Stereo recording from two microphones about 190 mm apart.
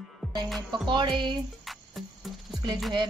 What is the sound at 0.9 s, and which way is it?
Speech, 25° right (ahead or behind).